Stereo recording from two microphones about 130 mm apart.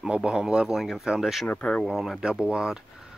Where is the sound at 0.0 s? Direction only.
5° right (ahead or behind).